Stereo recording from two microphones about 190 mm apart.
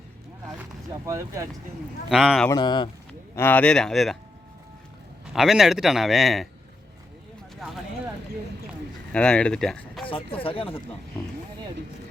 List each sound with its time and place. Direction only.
1.0 s speech: 15° right (ahead or behind)
2.0 s a man's voice: centre (ahead or behind)
2.5 s speech: 20° left (ahead or behind)
3.1 s speech: 10° left (ahead or behind)
5.2 s a man's voice: centre (ahead or behind)
7.5 s a sound: centre (ahead or behind)
9.1 s speech: 5° left (ahead or behind)
10.1 s speech: 30° left (ahead or behind)